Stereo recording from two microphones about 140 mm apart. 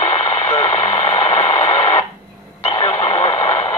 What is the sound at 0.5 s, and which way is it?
Radio, 25° left (ahead or behind).